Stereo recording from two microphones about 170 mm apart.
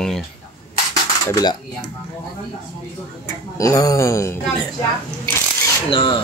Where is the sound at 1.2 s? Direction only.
20° left (ahead or behind).